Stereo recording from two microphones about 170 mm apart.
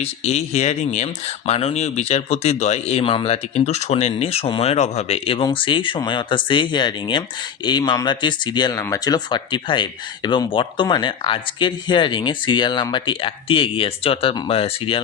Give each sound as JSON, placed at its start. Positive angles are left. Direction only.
{"t": 0.0, "sound": "speech", "side_deg": 40}